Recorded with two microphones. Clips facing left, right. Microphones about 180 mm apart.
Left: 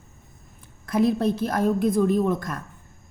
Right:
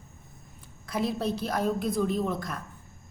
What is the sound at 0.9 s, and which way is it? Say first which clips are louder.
A woman's voice: left 8 dB; 50° left (ahead or behind).